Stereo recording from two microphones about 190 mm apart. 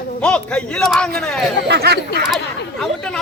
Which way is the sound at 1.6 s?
60° right (ahead or behind).